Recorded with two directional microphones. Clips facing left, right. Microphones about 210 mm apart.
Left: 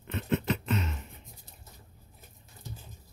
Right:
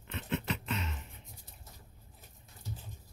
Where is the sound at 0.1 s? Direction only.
45° left (ahead or behind).